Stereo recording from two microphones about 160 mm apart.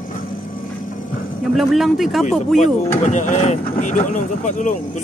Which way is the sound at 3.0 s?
50° left (ahead or behind).